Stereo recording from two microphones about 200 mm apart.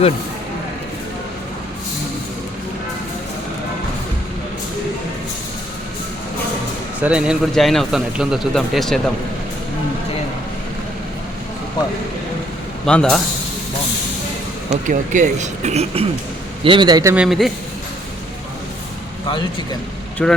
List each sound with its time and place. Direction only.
7.0 s a man's voice: 5° right (ahead or behind)
11.8 s speech: 20° left (ahead or behind)
12.8 s a man's voice: 5° left (ahead or behind)
14.7 s a man's voice: 40° right (ahead or behind); by 17.2 s 15° right (ahead or behind)
17.2 s a man's voice: centre (ahead or behind)
20.2 s a man's voice: 5° left (ahead or behind)